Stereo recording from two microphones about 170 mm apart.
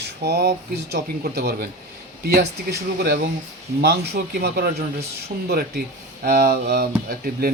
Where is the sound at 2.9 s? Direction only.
70° right (ahead or behind).